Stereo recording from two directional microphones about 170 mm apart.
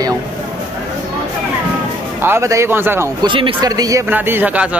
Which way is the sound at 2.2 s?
15° right (ahead or behind).